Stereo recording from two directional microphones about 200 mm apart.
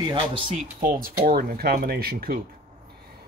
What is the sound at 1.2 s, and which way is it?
Speech, 50° right (ahead or behind).